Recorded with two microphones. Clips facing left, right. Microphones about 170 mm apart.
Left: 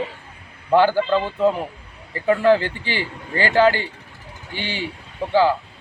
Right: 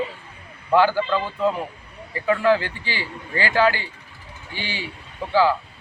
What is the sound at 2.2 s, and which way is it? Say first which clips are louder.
A man's voice: left 3 dB; 30° left (ahead or behind).